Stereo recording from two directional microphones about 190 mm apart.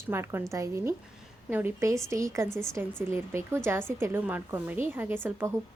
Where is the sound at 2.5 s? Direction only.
5° left (ahead or behind).